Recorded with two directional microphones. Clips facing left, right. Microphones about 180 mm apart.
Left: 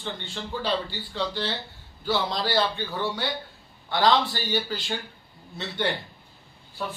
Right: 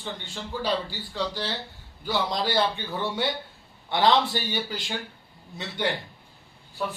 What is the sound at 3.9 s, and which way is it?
Speech, 20° right (ahead or behind).